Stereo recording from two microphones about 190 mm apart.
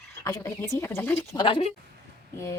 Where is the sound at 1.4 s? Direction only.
30° left (ahead or behind).